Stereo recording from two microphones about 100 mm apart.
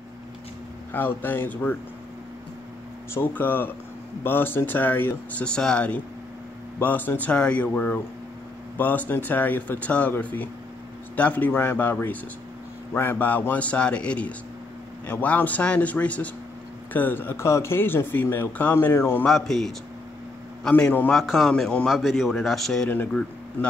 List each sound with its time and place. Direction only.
0.9 s speech: 20° left (ahead or behind)
3.2 s speech: 20° left (ahead or behind)
19.2 s speech: centre (ahead or behind)
21.1 s speech: centre (ahead or behind)
21.8 s speech: centre (ahead or behind)
22.8 s speech: 20° left (ahead or behind)